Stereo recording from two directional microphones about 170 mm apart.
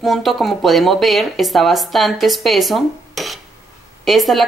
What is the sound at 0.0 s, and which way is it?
Speech, centre (ahead or behind).